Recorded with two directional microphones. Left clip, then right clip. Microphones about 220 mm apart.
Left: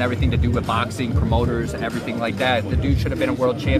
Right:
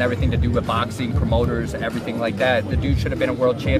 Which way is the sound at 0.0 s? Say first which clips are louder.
Right 1 dB; 10° left (ahead or behind).